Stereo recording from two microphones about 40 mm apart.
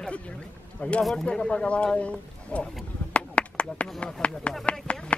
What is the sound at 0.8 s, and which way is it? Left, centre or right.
Speech, left.